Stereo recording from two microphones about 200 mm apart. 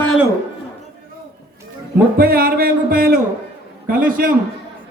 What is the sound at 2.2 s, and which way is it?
Speech, 50° right (ahead or behind).